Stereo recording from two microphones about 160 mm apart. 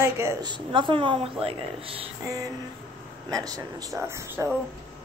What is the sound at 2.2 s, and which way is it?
Speech, 20° right (ahead or behind).